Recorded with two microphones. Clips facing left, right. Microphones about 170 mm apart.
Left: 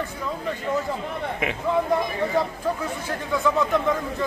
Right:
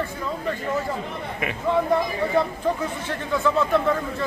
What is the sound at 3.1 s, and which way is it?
Speech, 15° left (ahead or behind).